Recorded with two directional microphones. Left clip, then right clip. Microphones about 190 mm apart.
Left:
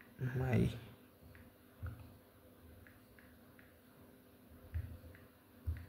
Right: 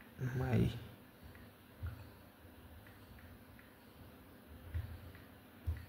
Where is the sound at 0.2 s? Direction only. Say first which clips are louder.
Even; centre (ahead or behind).